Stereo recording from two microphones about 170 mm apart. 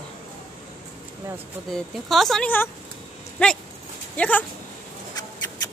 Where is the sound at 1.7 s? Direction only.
Centre (ahead or behind).